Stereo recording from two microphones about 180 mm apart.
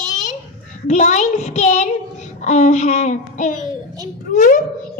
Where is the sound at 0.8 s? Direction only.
40° left (ahead or behind).